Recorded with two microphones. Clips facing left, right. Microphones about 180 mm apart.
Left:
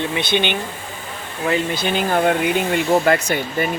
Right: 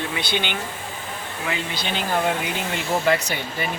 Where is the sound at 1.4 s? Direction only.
50° left (ahead or behind).